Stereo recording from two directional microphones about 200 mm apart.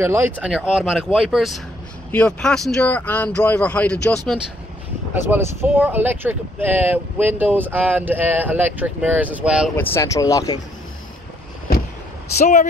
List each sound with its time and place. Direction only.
0.0 s speech: 10° right (ahead or behind); by 4.2 s 5° left (ahead or behind)
5.1 s speech: 10° right (ahead or behind)
9.8 s speech: 15° left (ahead or behind)
12.4 s speech: 35° left (ahead or behind)